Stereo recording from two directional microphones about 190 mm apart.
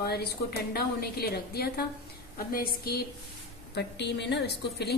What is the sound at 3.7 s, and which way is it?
Speech, 65° left (ahead or behind).